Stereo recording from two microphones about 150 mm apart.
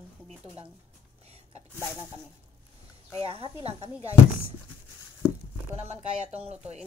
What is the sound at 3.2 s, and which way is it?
Speech, 40° right (ahead or behind).